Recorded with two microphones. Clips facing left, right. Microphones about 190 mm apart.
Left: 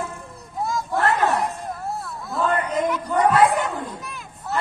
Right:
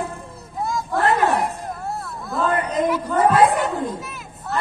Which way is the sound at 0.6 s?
Centre (ahead or behind).